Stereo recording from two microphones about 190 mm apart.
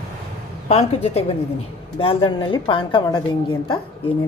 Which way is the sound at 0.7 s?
35° left (ahead or behind).